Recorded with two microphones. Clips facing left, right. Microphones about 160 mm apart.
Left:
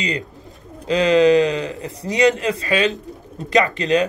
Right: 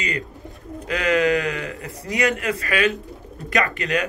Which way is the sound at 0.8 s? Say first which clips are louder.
Left 6 dB; 25° left (ahead or behind).